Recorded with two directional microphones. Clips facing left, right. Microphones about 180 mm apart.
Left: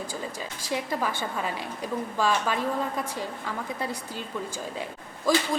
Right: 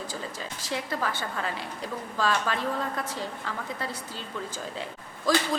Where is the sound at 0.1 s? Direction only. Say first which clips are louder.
Left 2 dB; 10° left (ahead or behind).